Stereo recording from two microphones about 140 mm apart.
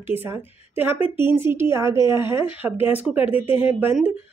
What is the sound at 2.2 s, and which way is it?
Speech, 35° left (ahead or behind).